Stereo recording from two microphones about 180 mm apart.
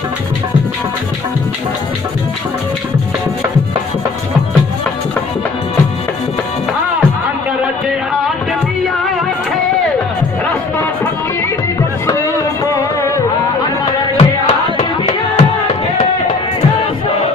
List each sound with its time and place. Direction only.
12.0 s music: 20° left (ahead or behind)
14.2 s music: 35° left (ahead or behind)